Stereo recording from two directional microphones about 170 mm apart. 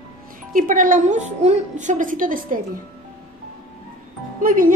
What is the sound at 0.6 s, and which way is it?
A woman's voice, 50° right (ahead or behind).